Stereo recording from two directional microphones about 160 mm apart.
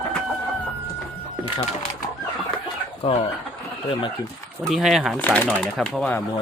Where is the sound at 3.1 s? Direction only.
35° left (ahead or behind).